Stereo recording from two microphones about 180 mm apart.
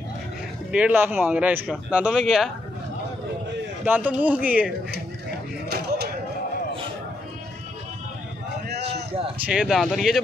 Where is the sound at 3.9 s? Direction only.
10° right (ahead or behind).